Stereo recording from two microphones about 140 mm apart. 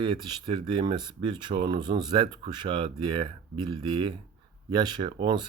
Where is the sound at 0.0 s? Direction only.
35° right (ahead or behind).